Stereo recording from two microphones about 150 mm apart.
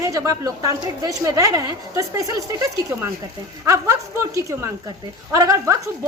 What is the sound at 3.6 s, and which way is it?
A woman's voice, 20° right (ahead or behind).